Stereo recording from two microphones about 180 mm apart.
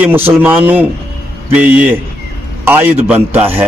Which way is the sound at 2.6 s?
10° right (ahead or behind).